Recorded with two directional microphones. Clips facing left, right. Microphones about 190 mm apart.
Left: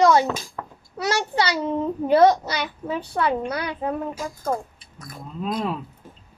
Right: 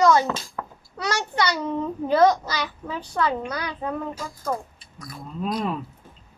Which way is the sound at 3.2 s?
30° left (ahead or behind).